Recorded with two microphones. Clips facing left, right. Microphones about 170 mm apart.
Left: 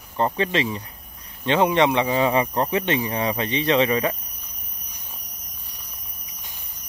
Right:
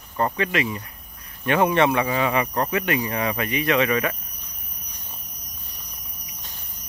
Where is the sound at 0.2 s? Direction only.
25° left (ahead or behind).